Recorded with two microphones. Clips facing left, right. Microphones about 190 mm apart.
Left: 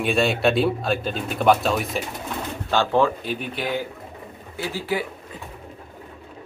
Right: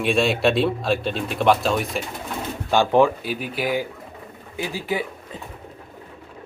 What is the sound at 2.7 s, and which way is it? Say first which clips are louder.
A man's voice: right 3 dB; 15° right (ahead or behind).